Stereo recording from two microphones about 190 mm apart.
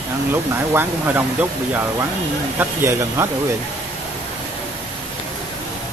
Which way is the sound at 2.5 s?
15° right (ahead or behind).